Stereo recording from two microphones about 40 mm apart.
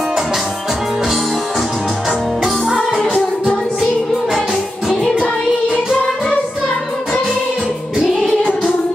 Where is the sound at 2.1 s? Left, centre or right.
Centre.